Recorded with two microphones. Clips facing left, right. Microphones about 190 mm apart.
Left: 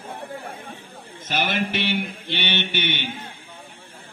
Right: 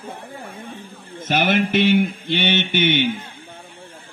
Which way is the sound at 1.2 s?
50° right (ahead or behind).